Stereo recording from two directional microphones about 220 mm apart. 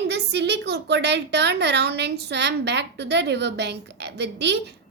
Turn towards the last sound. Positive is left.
turn(degrees=-50)  # may be behind; listen again after turning